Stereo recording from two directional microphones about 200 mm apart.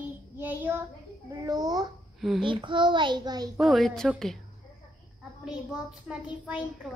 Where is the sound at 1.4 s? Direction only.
20° right (ahead or behind).